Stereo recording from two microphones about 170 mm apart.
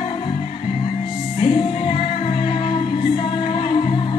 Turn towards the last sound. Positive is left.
turn(degrees=30)  # may be behind; listen again after turning